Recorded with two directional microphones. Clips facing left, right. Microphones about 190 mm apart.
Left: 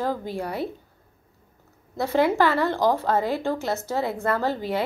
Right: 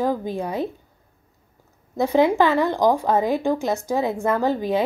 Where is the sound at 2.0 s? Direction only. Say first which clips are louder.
Right 3 dB; 15° right (ahead or behind).